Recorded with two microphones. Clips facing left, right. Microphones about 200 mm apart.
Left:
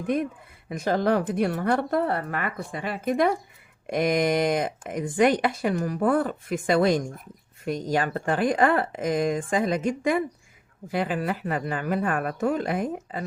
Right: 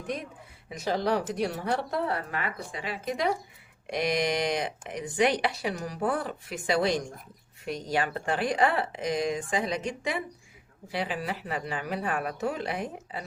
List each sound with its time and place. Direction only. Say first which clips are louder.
0.7 s speech: left 4 dB; 50° left (ahead or behind)